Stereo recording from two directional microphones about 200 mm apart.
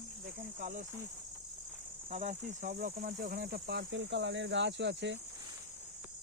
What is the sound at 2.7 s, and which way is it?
Speech, 50° right (ahead or behind).